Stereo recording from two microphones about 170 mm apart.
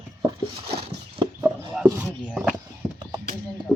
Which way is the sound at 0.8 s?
30° right (ahead or behind).